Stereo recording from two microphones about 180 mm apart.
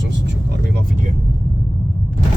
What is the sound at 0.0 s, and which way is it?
Vehicle, 80° right.